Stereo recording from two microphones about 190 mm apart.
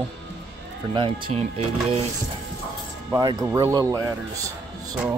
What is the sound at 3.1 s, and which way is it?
Speech, 20° right (ahead or behind).